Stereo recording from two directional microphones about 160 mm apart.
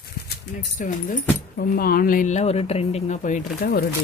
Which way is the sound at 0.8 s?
55° left (ahead or behind).